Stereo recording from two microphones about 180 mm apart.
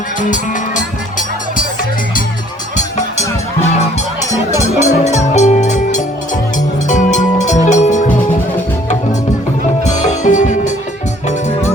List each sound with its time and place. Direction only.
0.2 s music: 45° left (ahead or behind)
2.7 s music: 40° left (ahead or behind)
9.8 s music: 40° left (ahead or behind)